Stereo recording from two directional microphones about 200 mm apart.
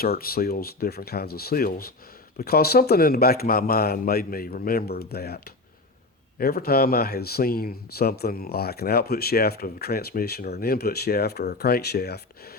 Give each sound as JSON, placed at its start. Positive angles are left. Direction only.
{"t": 0.0, "sound": "speech", "side_deg": 50}
{"t": 6.4, "sound": "speech", "side_deg": 50}